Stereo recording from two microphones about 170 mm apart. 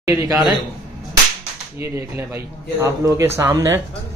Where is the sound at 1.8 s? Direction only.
15° right (ahead or behind).